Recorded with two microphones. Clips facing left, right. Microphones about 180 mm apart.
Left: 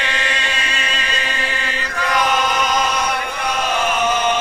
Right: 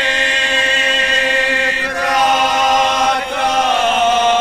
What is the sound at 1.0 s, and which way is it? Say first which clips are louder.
Chant: right 7 dB; 45° right (ahead or behind).